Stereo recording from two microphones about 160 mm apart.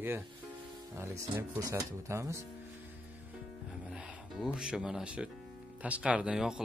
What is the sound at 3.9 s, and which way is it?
Music, 5° right (ahead or behind).